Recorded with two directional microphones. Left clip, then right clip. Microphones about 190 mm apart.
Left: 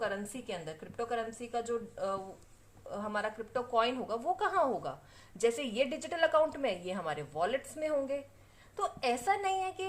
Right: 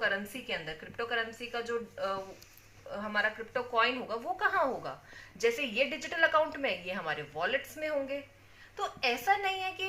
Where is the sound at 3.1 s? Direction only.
50° left (ahead or behind).